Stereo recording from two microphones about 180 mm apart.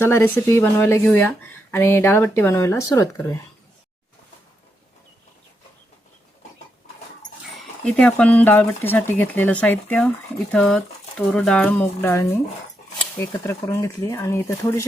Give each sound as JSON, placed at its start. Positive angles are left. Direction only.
{"t": 0.0, "sound": "speech", "side_deg": 15}
{"t": 7.9, "sound": "speech", "side_deg": 5}